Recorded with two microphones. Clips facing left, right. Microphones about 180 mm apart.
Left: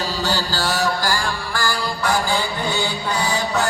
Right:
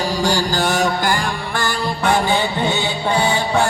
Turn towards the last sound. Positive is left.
turn(degrees=-25)  # may be behind; listen again after turning